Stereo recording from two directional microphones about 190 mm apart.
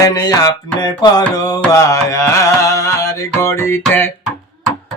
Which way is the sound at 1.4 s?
20° left (ahead or behind).